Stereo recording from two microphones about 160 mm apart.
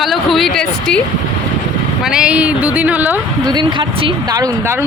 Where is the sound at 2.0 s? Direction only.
5° right (ahead or behind).